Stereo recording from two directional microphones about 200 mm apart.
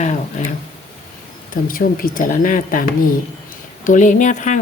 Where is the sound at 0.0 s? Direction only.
35° left (ahead or behind).